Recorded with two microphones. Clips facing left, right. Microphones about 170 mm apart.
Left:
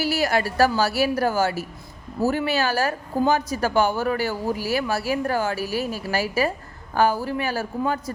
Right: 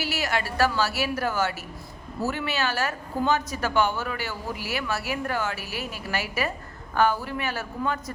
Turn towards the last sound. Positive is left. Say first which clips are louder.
# left 4 dB
turn(degrees=35)  # may be behind; listen again after turning